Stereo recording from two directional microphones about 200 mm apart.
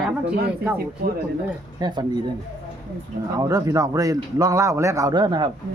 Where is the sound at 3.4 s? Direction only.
20° right (ahead or behind).